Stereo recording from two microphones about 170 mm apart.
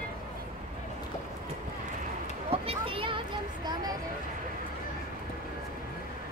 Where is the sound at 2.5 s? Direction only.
35° right (ahead or behind).